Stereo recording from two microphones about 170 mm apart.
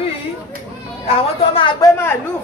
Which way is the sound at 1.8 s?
15° left (ahead or behind).